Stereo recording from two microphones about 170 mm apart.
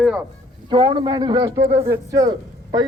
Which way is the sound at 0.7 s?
30° right (ahead or behind).